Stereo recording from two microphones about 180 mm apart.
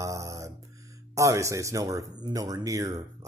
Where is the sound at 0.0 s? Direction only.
15° right (ahead or behind).